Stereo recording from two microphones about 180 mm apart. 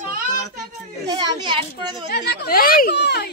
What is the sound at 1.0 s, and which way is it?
A child's voice, 25° right (ahead or behind).